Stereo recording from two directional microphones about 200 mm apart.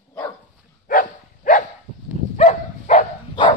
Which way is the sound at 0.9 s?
45° left (ahead or behind).